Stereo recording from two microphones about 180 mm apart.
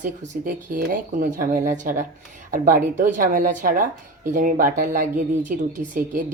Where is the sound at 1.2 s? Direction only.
50° right (ahead or behind).